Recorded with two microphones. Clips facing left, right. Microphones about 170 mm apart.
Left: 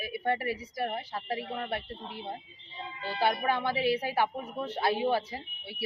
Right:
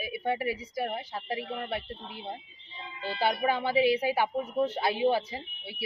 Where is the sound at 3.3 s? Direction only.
15° right (ahead or behind).